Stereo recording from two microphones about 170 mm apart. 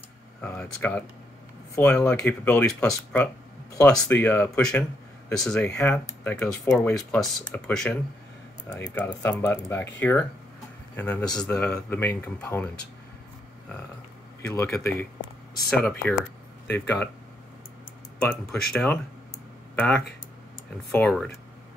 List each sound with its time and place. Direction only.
0.4 s speech: 10° left (ahead or behind)
14.5 s speech: 15° left (ahead or behind)
18.3 s speech: 5° left (ahead or behind)